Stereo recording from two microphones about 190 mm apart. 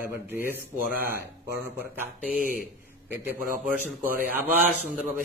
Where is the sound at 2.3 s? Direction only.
50° left (ahead or behind).